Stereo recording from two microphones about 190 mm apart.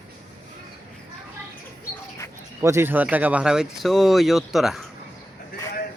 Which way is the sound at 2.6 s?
15° right (ahead or behind).